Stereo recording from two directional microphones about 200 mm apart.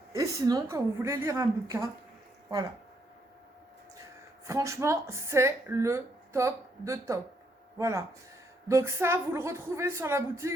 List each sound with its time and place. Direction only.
0.1 s speech: 15° right (ahead or behind)
4.4 s speech: 15° right (ahead or behind)